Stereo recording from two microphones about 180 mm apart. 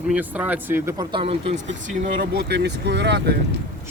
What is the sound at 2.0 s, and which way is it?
Speech, 60° right (ahead or behind).